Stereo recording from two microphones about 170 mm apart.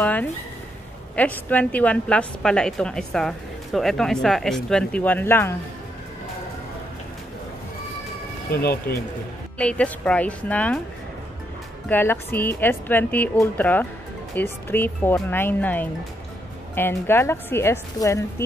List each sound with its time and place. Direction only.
0.0 s a sound: 10° left (ahead or behind)
1.1 s a woman's voice: 10° left (ahead or behind)
8.5 s speech: 65° left (ahead or behind)
9.6 s speech: 5° left (ahead or behind)
11.9 s speech: 15° left (ahead or behind)